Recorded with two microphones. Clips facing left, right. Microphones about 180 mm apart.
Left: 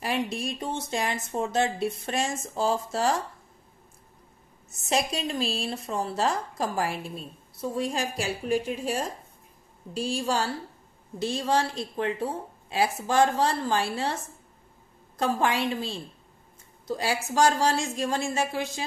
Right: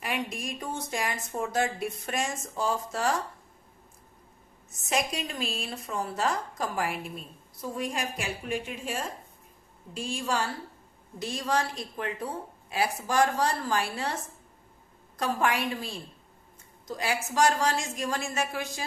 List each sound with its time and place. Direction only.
0.0 s speech: 30° left (ahead or behind)
4.8 s a woman's voice: 30° left (ahead or behind)
15.1 s speech: 25° left (ahead or behind)